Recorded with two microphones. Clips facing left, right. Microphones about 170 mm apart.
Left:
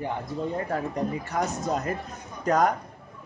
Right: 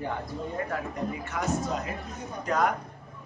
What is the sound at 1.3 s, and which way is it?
Speech, 40° left (ahead or behind).